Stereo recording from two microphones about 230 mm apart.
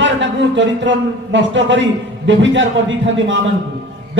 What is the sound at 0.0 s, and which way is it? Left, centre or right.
A man's voice, right.